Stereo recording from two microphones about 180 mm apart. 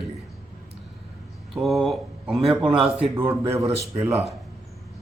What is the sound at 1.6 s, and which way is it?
Speech, centre (ahead or behind).